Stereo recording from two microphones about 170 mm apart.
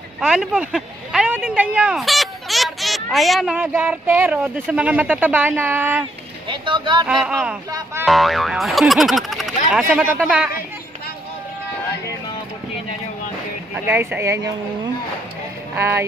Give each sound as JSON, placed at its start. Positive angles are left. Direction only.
{"t": 0.2, "sound": "speech", "side_deg": -5}
{"t": 6.5, "sound": "speech", "side_deg": -30}
{"t": 7.1, "sound": "speech", "side_deg": 0}
{"t": 7.7, "sound": "speech", "side_deg": -15}
{"t": 8.1, "sound": "speech", "side_deg": 0}
{"t": 13.8, "sound": "speech", "side_deg": -10}
{"t": 15.7, "sound": "speech", "side_deg": -10}